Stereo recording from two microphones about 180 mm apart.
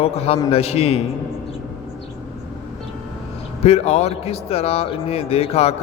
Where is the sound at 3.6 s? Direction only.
35° left (ahead or behind).